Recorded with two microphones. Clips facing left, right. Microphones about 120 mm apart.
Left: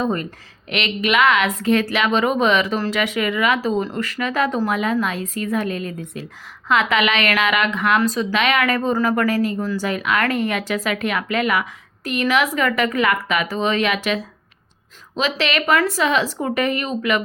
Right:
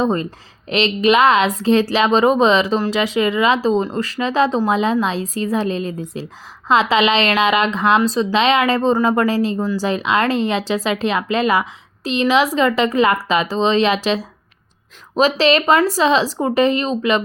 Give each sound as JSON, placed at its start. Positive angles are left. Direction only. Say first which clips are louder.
{"t": 0.0, "sound": "speech", "louder": "right 4 dB", "side_deg": -30}